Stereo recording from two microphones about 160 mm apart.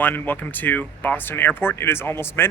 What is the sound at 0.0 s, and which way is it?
Speech, 10° left (ahead or behind).